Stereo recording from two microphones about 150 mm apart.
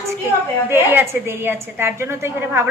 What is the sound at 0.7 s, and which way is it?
A woman's voice, 15° right (ahead or behind).